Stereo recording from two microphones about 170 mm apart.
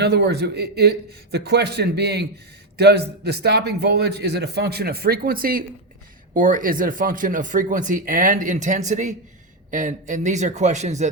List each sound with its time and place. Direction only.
0.0 s a man's voice: 75° right (ahead or behind); by 11.1 s 40° right (ahead or behind)